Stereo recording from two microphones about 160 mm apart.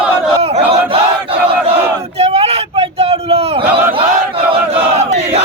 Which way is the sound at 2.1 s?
40° right (ahead or behind).